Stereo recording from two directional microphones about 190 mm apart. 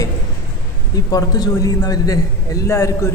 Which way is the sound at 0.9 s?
20° left (ahead or behind).